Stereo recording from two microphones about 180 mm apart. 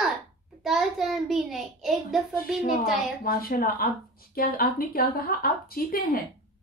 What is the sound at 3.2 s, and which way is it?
A woman's voice, 55° left (ahead or behind).